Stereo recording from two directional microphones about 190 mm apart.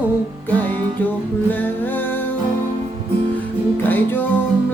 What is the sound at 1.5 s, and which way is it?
Music, 10° left (ahead or behind).